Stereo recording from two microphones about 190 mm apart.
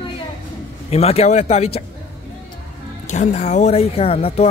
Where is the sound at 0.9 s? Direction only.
30° left (ahead or behind).